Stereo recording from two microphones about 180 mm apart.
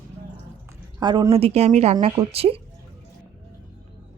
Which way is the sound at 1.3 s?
35° right (ahead or behind).